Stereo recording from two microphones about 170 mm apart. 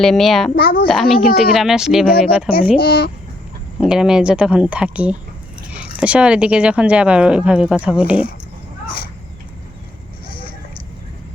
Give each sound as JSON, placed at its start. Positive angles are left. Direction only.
{"t": 0.0, "sound": "speech", "side_deg": 0}
{"t": 0.5, "sound": "a child's voice", "side_deg": 60}
{"t": 0.9, "sound": "speech", "side_deg": 0}
{"t": 2.7, "sound": "a child's voice", "side_deg": 65}
{"t": 3.8, "sound": "a woman's voice", "side_deg": -5}
{"t": 10.2, "sound": "a sound", "side_deg": 30}